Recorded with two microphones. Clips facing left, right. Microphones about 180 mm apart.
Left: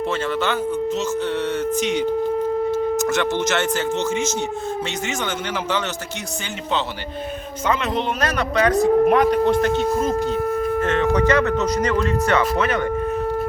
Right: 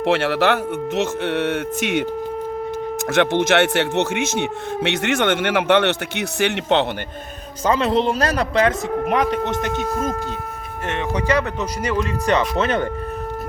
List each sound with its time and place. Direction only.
0.0 s speech: 70° right (ahead or behind)
3.1 s speech: 55° right (ahead or behind)
7.7 s speech: 30° right (ahead or behind)
10.8 s speech: 15° right (ahead or behind)
12.5 s speech: 25° right (ahead or behind)